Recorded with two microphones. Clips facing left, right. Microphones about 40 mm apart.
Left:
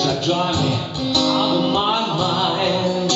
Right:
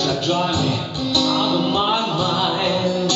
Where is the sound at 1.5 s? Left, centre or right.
Centre.